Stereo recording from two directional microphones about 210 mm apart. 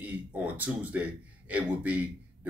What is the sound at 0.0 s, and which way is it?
A man's voice, 5° right (ahead or behind).